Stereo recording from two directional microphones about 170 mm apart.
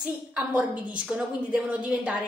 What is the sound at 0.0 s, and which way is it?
A woman's voice, 5° right (ahead or behind).